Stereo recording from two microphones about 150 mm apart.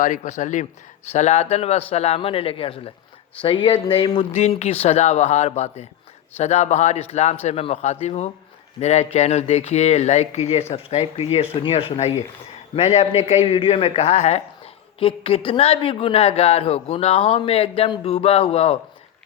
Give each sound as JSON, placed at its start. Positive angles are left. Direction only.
{"t": 0.0, "sound": "a woman's voice", "side_deg": 55}